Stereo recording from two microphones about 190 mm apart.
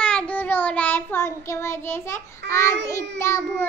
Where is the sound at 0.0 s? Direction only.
5° left (ahead or behind).